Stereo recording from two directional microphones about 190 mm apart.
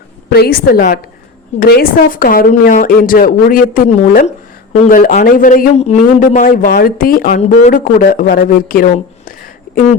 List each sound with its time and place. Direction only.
0.3 s a woman's voice: 55° left (ahead or behind)